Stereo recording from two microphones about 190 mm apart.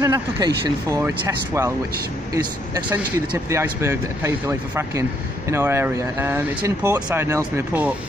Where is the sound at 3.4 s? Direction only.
15° right (ahead or behind).